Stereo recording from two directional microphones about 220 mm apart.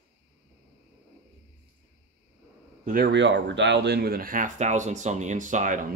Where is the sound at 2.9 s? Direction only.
45° right (ahead or behind).